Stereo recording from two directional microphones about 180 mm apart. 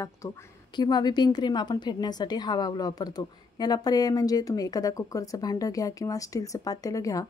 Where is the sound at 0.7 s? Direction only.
25° left (ahead or behind).